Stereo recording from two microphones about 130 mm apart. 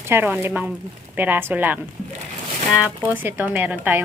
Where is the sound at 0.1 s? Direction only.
15° right (ahead or behind).